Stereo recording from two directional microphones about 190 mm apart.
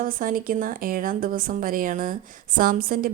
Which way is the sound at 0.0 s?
45° right (ahead or behind).